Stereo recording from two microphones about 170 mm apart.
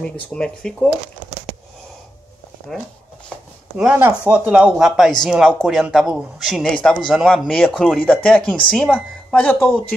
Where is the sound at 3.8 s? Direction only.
10° right (ahead or behind).